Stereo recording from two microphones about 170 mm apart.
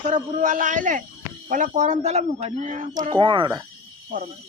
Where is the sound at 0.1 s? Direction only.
50° right (ahead or behind).